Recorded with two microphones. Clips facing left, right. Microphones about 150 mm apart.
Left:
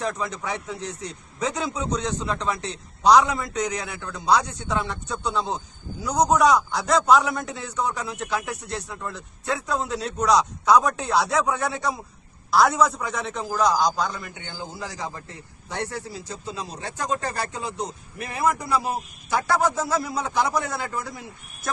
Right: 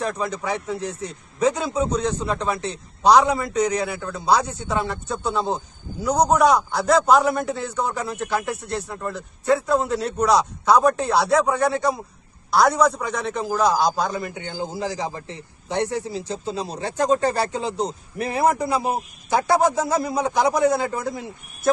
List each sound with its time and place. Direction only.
0.0 s a man's voice: centre (ahead or behind)
14.3 s a man's voice: 35° right (ahead or behind)
14.6 s a man's voice: 25° right (ahead or behind)